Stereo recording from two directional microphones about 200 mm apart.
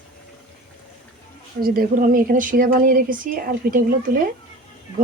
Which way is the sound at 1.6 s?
45° right (ahead or behind).